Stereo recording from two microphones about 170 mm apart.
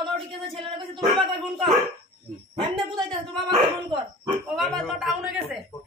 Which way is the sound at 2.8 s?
25° right (ahead or behind).